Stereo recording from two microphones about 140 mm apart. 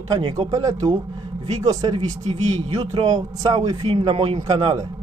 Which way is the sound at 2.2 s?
45° right (ahead or behind).